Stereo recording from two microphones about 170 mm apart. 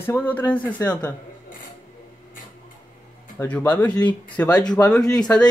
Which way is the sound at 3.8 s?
25° left (ahead or behind).